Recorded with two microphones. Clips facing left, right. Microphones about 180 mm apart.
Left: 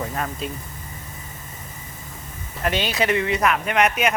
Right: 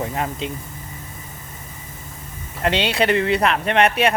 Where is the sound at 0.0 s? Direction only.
25° right (ahead or behind).